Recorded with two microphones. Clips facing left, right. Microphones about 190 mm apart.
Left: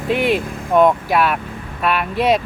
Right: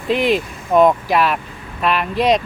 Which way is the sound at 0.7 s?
Centre (ahead or behind).